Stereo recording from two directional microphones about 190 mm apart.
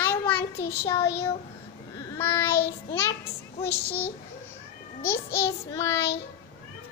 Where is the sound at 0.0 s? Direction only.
10° left (ahead or behind).